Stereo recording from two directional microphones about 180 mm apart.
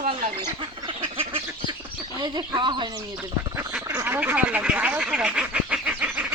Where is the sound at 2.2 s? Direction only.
25° right (ahead or behind).